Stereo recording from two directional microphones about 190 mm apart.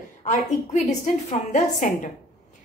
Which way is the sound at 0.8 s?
40° left (ahead or behind).